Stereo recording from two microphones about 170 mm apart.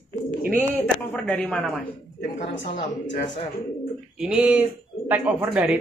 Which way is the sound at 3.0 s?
90° left.